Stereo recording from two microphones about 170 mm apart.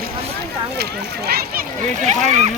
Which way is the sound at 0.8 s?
70° right (ahead or behind).